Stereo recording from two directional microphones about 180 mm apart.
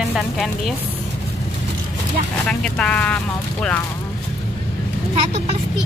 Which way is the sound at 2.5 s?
5° left (ahead or behind).